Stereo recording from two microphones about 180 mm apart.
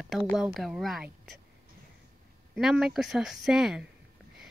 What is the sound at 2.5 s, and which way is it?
Speech, centre (ahead or behind).